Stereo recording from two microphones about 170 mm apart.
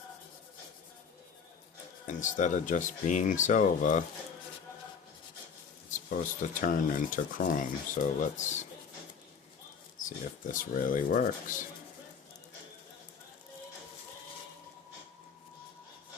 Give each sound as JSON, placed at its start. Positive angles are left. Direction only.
{"t": 2.0, "sound": "speech", "side_deg": 45}
{"t": 6.5, "sound": "speech", "side_deg": 50}
{"t": 10.0, "sound": "speech", "side_deg": 50}